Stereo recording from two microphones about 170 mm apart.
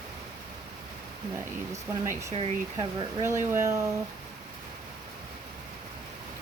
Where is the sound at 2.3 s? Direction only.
30° right (ahead or behind).